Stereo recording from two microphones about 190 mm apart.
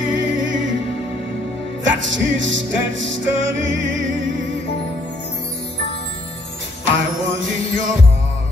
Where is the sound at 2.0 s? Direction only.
75° right (ahead or behind).